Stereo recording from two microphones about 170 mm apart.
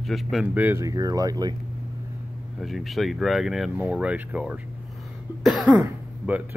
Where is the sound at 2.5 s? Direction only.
Centre (ahead or behind).